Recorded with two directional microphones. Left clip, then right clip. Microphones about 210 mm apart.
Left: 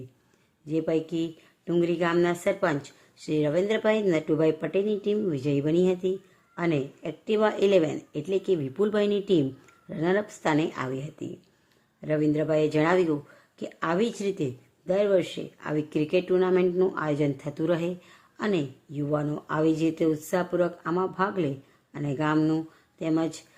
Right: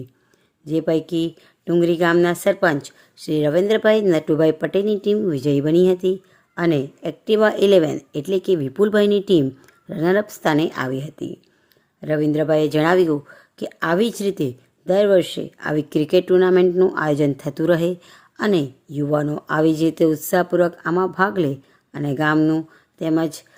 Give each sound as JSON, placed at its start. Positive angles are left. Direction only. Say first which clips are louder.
{"t": 0.6, "sound": "speech", "louder": "right 7 dB", "side_deg": -30}